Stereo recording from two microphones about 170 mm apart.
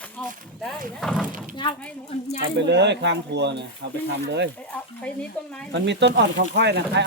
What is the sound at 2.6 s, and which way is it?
Speech, 90° right.